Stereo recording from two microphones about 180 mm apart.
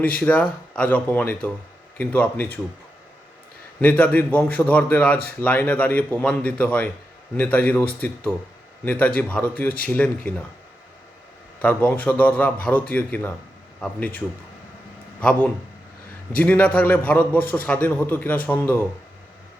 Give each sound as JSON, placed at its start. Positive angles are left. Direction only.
{"t": 0.2, "sound": "speech", "side_deg": 5}
{"t": 3.8, "sound": "speech", "side_deg": 10}
{"t": 11.6, "sound": "speech", "side_deg": 10}
{"t": 15.2, "sound": "speech", "side_deg": 5}